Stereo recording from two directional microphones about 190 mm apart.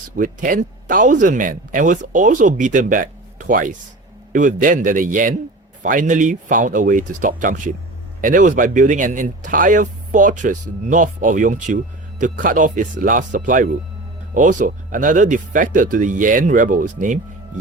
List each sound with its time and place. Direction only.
0.2 s speech: 45° right (ahead or behind)